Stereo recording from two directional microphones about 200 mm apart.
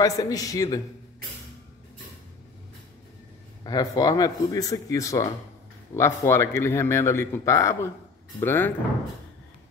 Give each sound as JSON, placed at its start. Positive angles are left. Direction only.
{"t": 0.0, "sound": "a man's voice", "side_deg": 15}
{"t": 3.6, "sound": "a man's voice", "side_deg": 20}